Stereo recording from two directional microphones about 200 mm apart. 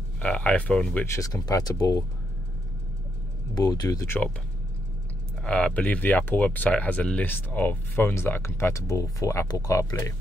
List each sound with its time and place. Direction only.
0.2 s speech: 5° left (ahead or behind)
3.5 s speech: 20° left (ahead or behind)
5.4 s speech: 5° left (ahead or behind)